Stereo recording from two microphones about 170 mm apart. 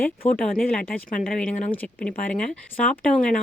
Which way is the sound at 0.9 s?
55° left (ahead or behind).